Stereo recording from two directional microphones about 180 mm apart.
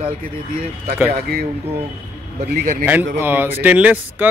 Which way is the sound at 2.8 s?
10° right (ahead or behind).